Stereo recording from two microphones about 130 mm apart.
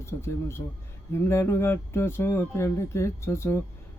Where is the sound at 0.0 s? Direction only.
20° left (ahead or behind).